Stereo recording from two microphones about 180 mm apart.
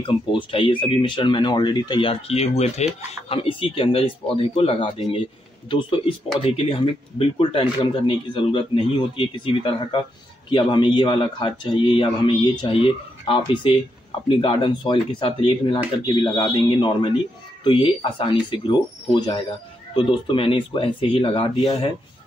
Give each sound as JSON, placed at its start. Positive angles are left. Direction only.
{"t": 0.0, "sound": "speech", "side_deg": 30}